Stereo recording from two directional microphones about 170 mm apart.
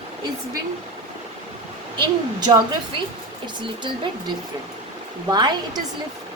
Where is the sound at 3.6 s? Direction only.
25° right (ahead or behind).